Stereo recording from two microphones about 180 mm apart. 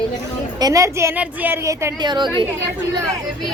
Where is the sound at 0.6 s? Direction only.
20° right (ahead or behind).